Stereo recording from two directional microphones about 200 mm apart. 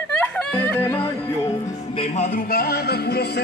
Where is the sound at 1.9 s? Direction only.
35° left (ahead or behind); by 3.4 s 50° left (ahead or behind).